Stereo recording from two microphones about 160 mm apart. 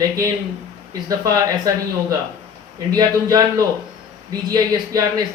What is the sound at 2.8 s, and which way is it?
Speech, 25° right (ahead or behind).